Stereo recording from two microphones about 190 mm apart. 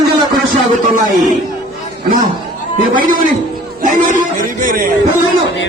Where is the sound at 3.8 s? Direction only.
45° right (ahead or behind).